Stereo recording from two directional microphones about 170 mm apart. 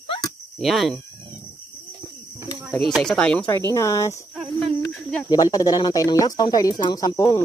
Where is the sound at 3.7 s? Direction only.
20° left (ahead or behind).